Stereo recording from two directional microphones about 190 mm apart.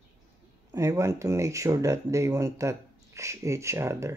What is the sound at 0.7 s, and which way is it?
Speech, 15° right (ahead or behind).